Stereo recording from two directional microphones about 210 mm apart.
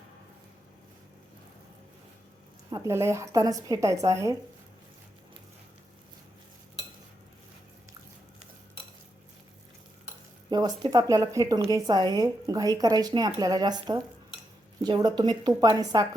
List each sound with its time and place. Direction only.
2.6 s a woman's voice: 15° right (ahead or behind)
10.5 s speech: 20° right (ahead or behind)